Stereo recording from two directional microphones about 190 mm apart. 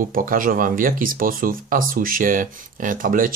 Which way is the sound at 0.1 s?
45° right (ahead or behind).